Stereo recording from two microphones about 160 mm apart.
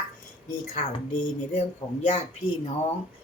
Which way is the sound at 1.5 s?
40° left (ahead or behind).